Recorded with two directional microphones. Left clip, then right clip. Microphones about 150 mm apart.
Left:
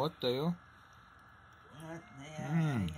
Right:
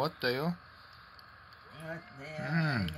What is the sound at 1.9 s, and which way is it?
Speech, 55° right (ahead or behind).